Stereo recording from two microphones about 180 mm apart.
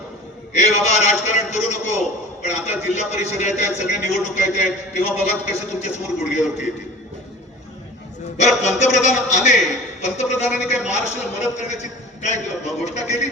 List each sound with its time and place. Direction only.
0.5 s a man's voice: 40° left (ahead or behind)
8.4 s a man's voice: 40° left (ahead or behind)